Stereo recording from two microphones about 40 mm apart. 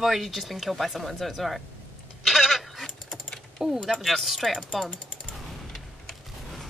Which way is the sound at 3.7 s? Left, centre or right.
Centre.